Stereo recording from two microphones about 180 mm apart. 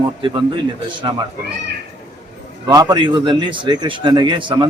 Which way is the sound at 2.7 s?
20° right (ahead or behind).